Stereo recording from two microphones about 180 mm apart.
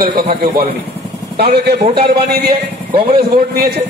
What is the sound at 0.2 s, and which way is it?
A man's voice, 55° right (ahead or behind).